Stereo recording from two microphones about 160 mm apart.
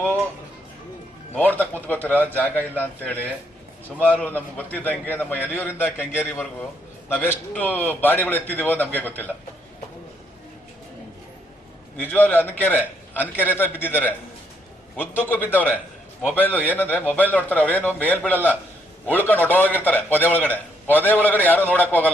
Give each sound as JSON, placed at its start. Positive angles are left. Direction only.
{"t": 1.4, "sound": "a man's voice", "side_deg": 10}
{"t": 11.9, "sound": "a man's voice", "side_deg": 10}